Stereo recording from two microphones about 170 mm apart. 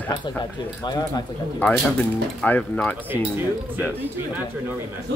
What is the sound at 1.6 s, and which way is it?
Speech, 10° left (ahead or behind).